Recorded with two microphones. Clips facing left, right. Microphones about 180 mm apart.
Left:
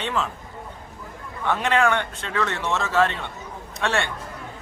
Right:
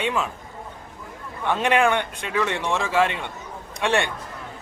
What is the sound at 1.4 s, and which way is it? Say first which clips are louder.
Speech: right 1 dB; 15° right (ahead or behind).